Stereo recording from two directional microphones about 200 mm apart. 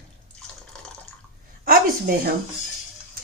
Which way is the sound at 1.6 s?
45° right (ahead or behind).